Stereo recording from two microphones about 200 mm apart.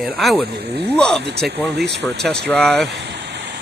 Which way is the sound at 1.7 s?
55° right (ahead or behind).